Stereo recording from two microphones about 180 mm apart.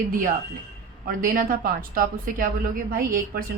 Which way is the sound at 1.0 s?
50° right (ahead or behind).